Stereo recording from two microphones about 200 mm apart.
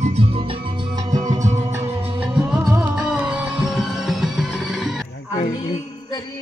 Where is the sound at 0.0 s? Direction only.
30° right (ahead or behind).